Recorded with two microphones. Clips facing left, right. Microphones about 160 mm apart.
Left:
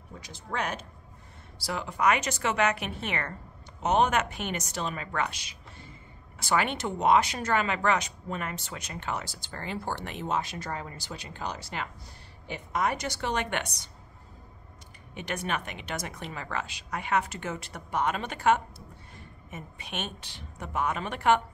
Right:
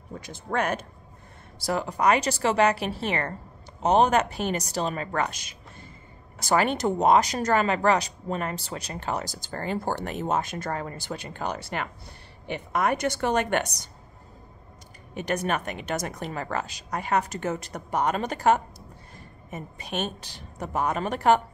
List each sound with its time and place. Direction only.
0.2 s a woman's voice: 55° right (ahead or behind)
15.1 s a woman's voice: 45° right (ahead or behind)